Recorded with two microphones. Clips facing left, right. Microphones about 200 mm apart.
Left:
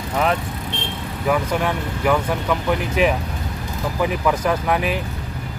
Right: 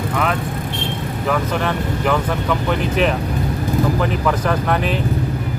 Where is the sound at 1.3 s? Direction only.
10° left (ahead or behind).